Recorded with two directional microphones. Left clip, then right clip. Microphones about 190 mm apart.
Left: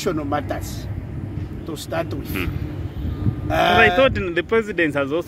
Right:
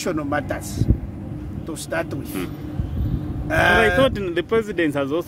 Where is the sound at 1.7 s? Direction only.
5° right (ahead or behind).